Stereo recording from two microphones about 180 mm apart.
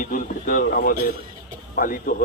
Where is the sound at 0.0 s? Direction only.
45° left (ahead or behind).